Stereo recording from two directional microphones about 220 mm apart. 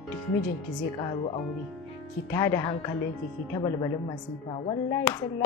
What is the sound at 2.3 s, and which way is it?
Speech, 15° left (ahead or behind).